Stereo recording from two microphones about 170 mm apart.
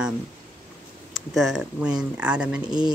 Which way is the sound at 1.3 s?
5° right (ahead or behind).